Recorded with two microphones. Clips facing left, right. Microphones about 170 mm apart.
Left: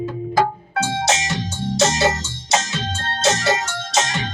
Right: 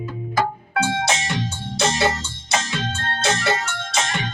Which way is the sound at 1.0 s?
55° right (ahead or behind).